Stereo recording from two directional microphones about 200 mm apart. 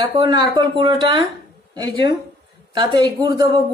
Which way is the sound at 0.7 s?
25° right (ahead or behind).